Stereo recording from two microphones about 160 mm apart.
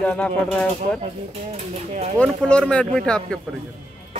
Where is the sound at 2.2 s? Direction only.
5° left (ahead or behind).